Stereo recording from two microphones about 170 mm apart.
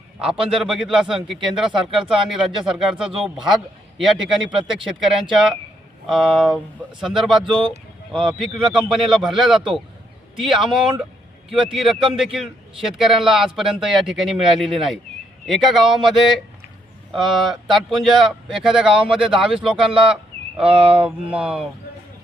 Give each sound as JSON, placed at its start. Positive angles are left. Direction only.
{"t": 0.2, "sound": "a man's voice", "side_deg": -5}
{"t": 6.1, "sound": "a man's voice", "side_deg": 0}
{"t": 20.7, "sound": "a sound", "side_deg": -35}
{"t": 21.3, "sound": "a man's voice", "side_deg": -5}